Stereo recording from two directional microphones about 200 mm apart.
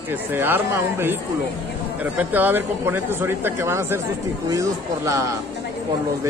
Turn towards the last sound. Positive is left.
turn(degrees=-15)  # may be behind; listen again after turning